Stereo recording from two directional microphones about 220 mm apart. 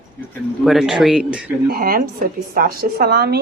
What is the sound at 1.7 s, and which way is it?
A woman's voice, 40° right (ahead or behind).